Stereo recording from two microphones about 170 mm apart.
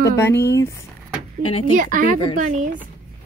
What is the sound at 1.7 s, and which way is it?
Speech, 50° right (ahead or behind).